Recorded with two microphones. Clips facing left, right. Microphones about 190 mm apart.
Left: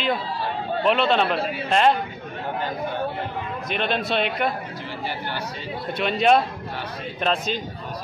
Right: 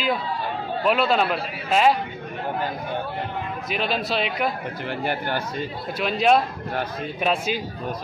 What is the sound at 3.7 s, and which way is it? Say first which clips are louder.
Speech: left 1 dB; 5° right (ahead or behind).